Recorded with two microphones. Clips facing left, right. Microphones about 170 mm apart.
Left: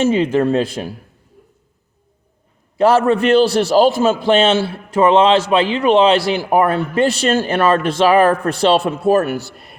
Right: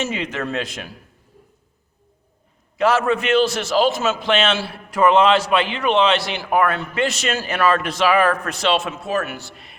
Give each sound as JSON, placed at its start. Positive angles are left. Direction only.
{"t": 0.0, "sound": "a man's voice", "side_deg": 30}
{"t": 2.7, "sound": "a man's voice", "side_deg": 30}